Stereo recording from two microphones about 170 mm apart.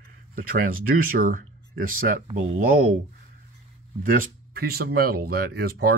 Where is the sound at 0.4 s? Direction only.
55° right (ahead or behind).